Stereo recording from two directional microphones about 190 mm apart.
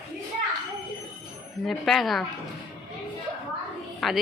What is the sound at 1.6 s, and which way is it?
Speech, centre (ahead or behind).